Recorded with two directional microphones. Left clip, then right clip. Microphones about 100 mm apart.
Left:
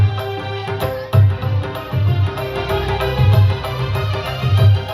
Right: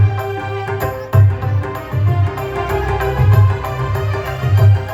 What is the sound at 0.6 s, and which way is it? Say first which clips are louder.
Music: right 1 dB; 25° left (ahead or behind).